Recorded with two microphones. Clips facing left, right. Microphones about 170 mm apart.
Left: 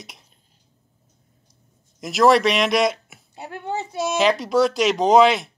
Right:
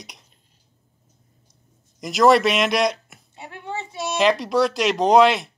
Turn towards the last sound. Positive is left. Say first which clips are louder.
# even
turn(degrees=0)  # may be behind; listen again after turning